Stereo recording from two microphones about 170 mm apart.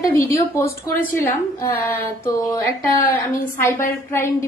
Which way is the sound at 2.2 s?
20° left (ahead or behind).